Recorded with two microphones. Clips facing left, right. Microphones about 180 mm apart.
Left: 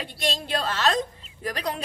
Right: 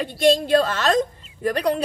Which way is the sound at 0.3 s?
50° right (ahead or behind).